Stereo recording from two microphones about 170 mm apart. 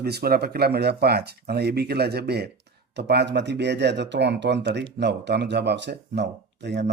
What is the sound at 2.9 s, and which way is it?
Speech, 85° right.